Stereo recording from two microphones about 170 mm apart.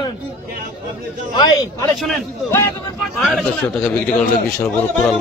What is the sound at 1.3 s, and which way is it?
Speech, 20° left (ahead or behind).